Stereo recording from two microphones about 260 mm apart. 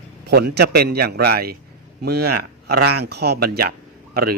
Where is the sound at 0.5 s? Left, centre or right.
Right.